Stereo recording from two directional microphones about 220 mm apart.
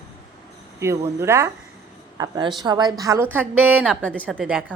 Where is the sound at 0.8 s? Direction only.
10° right (ahead or behind).